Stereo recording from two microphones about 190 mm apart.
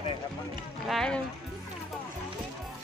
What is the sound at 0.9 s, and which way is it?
Speech, 5° left (ahead or behind).